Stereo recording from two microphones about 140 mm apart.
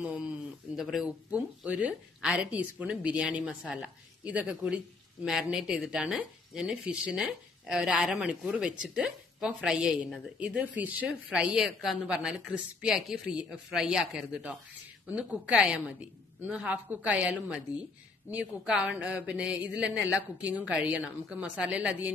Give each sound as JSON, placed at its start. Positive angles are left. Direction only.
{"t": 0.7, "sound": "speech", "side_deg": 0}